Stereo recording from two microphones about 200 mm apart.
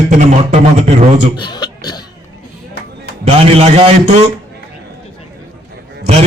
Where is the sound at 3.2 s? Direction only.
30° right (ahead or behind).